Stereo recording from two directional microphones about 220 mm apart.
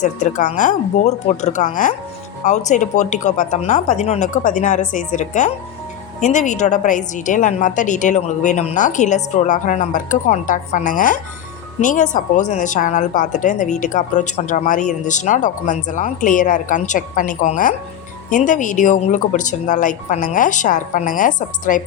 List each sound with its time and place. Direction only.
0.0 s a woman's voice: 35° left (ahead or behind)